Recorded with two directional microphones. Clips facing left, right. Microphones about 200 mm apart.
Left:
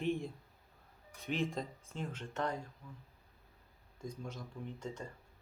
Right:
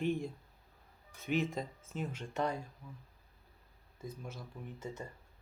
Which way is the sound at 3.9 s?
5° right (ahead or behind).